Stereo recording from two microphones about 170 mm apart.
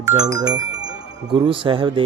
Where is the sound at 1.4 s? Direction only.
30° right (ahead or behind).